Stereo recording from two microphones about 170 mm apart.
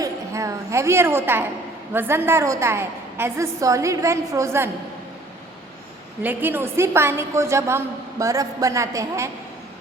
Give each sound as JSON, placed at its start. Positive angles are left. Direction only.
{"t": 0.0, "sound": "a woman's voice", "side_deg": -20}
{"t": 6.2, "sound": "a woman's voice", "side_deg": -10}